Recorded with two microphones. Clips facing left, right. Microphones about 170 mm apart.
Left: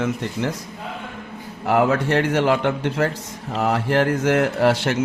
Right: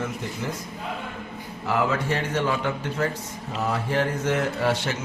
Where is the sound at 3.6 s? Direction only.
85° left.